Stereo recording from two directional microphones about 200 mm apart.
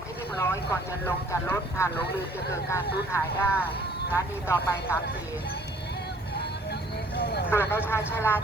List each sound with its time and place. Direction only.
0.3 s speech: 15° left (ahead or behind)
7.2 s speech: 55° left (ahead or behind)
7.5 s speech: 10° left (ahead or behind)